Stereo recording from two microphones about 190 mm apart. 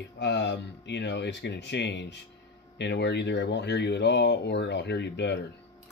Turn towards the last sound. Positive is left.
turn(degrees=65)  # may be behind; listen again after turning